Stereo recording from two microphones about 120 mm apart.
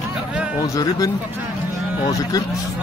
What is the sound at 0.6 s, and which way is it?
Speech, 30° left (ahead or behind).